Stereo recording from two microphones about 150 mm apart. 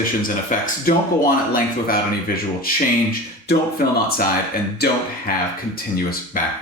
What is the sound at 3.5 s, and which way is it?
Speech, 90° left.